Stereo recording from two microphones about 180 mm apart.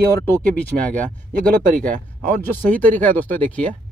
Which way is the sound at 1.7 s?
50° right (ahead or behind).